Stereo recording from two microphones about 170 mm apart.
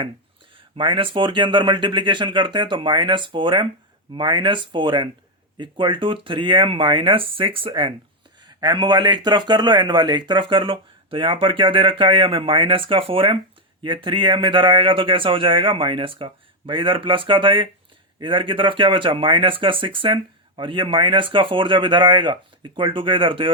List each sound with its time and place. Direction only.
0.5 s a man's voice: 30° right (ahead or behind)